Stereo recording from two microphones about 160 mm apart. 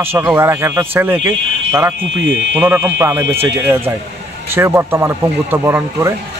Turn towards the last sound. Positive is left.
turn(degrees=-15)  # may be behind; listen again after turning